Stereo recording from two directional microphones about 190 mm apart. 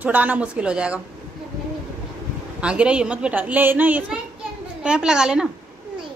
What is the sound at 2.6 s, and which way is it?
A woman's voice, 5° right (ahead or behind).